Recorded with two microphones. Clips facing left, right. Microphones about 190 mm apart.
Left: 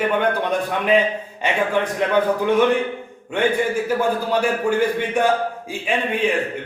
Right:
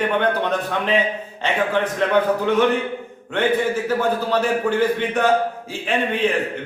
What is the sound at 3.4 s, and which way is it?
A man's voice, 10° left (ahead or behind).